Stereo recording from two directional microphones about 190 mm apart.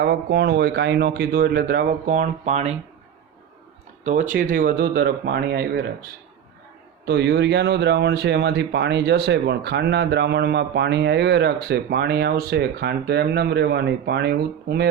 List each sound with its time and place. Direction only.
0.0 s speech: 60° right (ahead or behind); by 2.7 s 35° right (ahead or behind)
4.0 s speech: 40° right (ahead or behind); by 14.8 s 60° right (ahead or behind)